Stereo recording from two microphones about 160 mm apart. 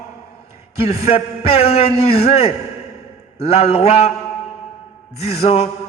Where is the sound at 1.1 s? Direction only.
40° left (ahead or behind).